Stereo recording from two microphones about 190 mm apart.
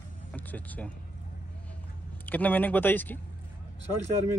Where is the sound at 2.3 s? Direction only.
10° left (ahead or behind).